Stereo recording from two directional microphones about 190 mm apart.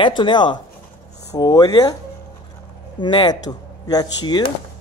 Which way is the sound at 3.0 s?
25° left (ahead or behind).